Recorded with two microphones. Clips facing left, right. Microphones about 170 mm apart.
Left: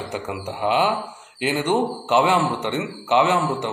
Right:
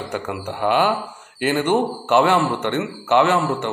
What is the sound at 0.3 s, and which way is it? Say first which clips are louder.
Speech: right 2 dB; 10° left (ahead or behind).